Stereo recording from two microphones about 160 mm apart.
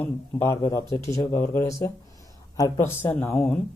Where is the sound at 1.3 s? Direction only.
15° left (ahead or behind).